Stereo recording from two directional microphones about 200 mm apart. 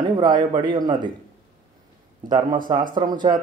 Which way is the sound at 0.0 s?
20° right (ahead or behind).